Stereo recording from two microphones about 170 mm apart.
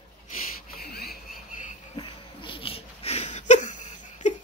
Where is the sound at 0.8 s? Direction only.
65° left (ahead or behind).